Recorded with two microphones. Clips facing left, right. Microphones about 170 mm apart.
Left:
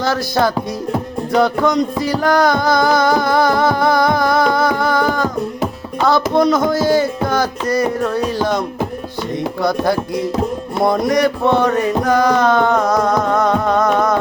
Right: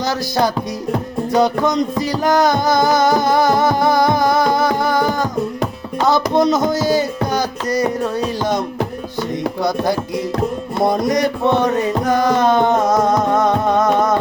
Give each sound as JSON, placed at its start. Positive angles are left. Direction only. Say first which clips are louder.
{"t": 0.0, "sound": "music", "louder": "left 1 dB", "side_deg": -20}
{"t": 9.6, "sound": "music", "louder": "left 3 dB", "side_deg": -20}